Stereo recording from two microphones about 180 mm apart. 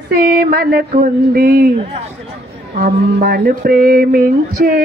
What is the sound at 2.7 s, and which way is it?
Speech, 55° right (ahead or behind).